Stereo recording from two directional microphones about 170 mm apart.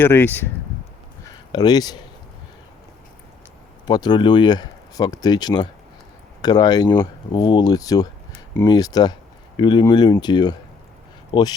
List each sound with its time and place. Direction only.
0.0 s speech: 10° left (ahead or behind)
1.2 s a sound: 25° left (ahead or behind)
3.8 s speech: 25° left (ahead or behind)